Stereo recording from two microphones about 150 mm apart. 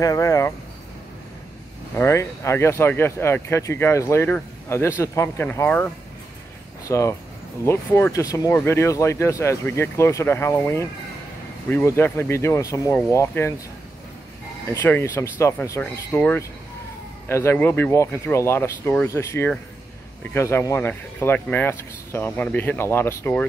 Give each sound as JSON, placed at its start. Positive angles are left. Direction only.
{"t": 0.0, "sound": "speech", "side_deg": 20}
{"t": 2.0, "sound": "speech", "side_deg": 20}
{"t": 6.9, "sound": "speech", "side_deg": 20}
{"t": 14.7, "sound": "speech", "side_deg": 15}